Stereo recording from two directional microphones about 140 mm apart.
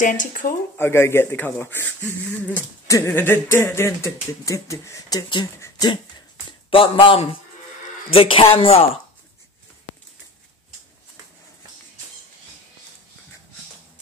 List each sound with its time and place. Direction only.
0.0 s speech: 65° left (ahead or behind)
0.7 s speech: 15° left (ahead or behind)
6.7 s a woman's voice: 40° left (ahead or behind)